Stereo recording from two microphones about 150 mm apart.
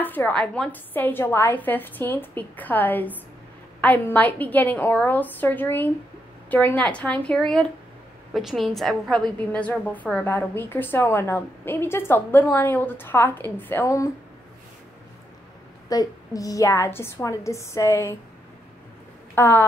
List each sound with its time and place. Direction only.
0.0 s a woman's voice: 10° left (ahead or behind)
15.9 s a woman's voice: 25° left (ahead or behind)
19.3 s speech: 15° left (ahead or behind)